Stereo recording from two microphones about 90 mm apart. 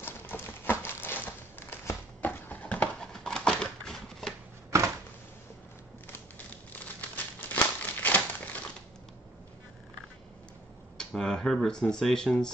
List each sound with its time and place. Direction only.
0.0 s crumpling: 25° left (ahead or behind); by 4.3 s 5° left (ahead or behind)
4.6 s a sound: 35° right (ahead or behind)
6.1 s crumpling: 20° left (ahead or behind)
11.0 s speech: 5° left (ahead or behind)